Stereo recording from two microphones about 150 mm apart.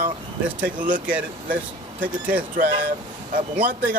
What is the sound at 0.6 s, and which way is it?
Speech, 65° right (ahead or behind).